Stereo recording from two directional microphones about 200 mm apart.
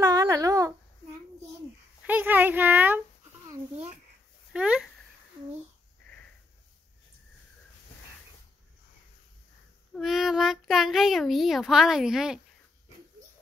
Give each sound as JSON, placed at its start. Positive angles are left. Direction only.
{"t": 0.0, "sound": "a sound", "side_deg": -15}
{"t": 2.0, "sound": "a woman's voice", "side_deg": -10}
{"t": 4.5, "sound": "speech", "side_deg": -5}
{"t": 9.9, "sound": "a child's voice", "side_deg": 0}